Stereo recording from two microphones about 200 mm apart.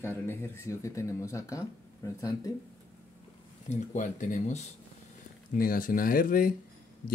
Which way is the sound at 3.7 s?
35° left (ahead or behind).